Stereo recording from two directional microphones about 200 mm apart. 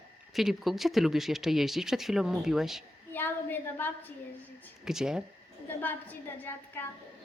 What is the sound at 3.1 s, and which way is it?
Speech, 10° left (ahead or behind).